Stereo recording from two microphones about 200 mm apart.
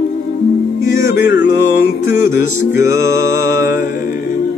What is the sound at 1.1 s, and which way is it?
Music, 65° left (ahead or behind).